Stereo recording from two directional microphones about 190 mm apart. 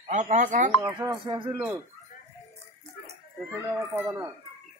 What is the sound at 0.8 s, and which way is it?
Speech, 25° right (ahead or behind).